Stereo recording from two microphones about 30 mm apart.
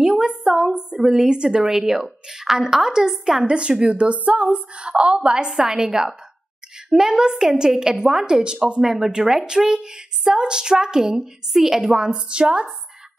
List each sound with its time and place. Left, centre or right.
0.2 s speech: right
0.9 s a woman's voice: centre
1.3 s speech: right
1.8 s a woman's voice: centre
3.4 s a sound: right
5.5 s a woman's voice: centre
11.5 s a woman's voice: centre
11.8 s a sound: right